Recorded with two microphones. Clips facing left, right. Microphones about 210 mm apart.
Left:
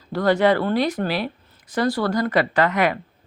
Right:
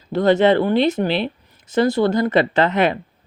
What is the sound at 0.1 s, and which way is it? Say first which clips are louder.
Speech: right 3 dB; 25° right (ahead or behind).